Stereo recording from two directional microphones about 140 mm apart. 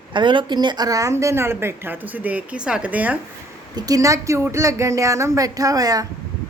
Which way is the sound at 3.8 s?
25° right (ahead or behind).